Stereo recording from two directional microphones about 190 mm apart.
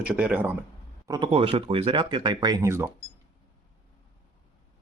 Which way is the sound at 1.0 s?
20° right (ahead or behind).